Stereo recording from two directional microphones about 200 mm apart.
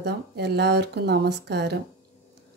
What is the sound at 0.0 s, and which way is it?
Speech, 55° right (ahead or behind).